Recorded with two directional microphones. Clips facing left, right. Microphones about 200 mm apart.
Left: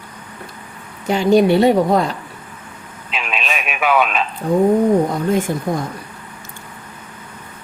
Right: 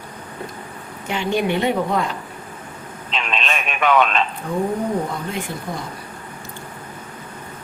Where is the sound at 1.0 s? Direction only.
40° left (ahead or behind).